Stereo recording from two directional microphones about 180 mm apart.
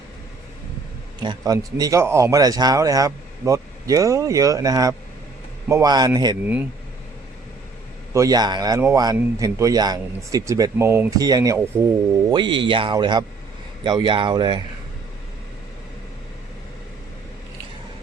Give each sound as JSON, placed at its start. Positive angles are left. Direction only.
{"t": 1.2, "sound": "speech", "side_deg": -25}
{"t": 8.1, "sound": "speech", "side_deg": -20}